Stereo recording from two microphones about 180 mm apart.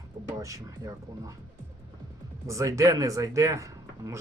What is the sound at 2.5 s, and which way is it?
Speech, 15° right (ahead or behind).